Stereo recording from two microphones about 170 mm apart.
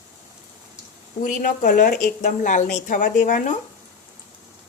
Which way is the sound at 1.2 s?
50° left (ahead or behind).